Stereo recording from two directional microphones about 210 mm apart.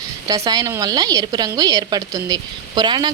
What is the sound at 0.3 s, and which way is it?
Speech, 15° right (ahead or behind).